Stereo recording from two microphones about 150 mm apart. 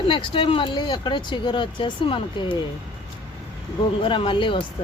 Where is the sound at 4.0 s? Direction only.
35° left (ahead or behind).